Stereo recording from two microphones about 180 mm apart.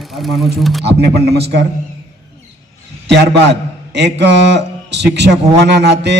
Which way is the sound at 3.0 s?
70° right (ahead or behind).